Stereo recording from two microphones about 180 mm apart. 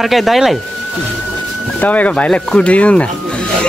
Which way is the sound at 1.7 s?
10° left (ahead or behind).